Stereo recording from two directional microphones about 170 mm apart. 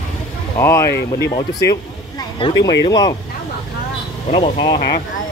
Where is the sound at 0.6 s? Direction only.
15° left (ahead or behind).